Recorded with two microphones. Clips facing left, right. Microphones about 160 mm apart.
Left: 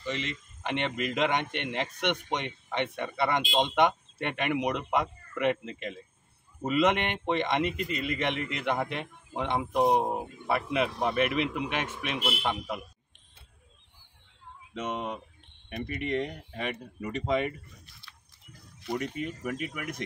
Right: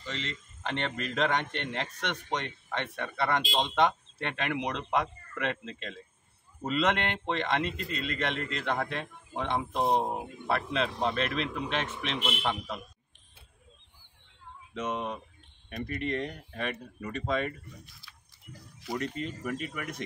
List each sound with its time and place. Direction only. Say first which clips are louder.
0.0 s speech: left 4 dB; 15° left (ahead or behind)
14.7 s speech: even; 15° left (ahead or behind)
18.8 s speech: left 1 dB; 5° left (ahead or behind)